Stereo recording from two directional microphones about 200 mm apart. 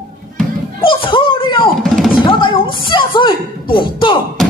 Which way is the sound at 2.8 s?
25° left (ahead or behind).